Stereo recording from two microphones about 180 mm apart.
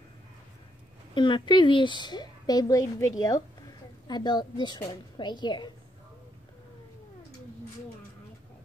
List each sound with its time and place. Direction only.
1.1 s a woman's voice: 25° left (ahead or behind)